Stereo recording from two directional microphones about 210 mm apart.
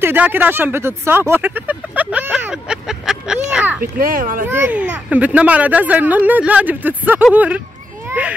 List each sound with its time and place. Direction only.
0.0 s speech: 10° right (ahead or behind)
3.8 s speech: 40° right (ahead or behind)
4.5 s speech: 10° right (ahead or behind)
8.1 s a sound: 5° right (ahead or behind)